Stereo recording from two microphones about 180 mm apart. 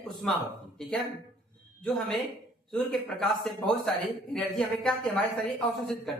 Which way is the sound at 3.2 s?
5° left (ahead or behind).